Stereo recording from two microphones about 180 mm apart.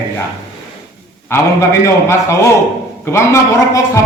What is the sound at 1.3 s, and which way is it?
A man's voice, 10° left (ahead or behind).